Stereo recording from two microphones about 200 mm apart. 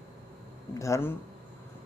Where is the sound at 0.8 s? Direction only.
15° left (ahead or behind).